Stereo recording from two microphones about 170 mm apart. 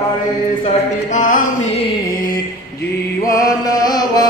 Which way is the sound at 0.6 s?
50° left (ahead or behind).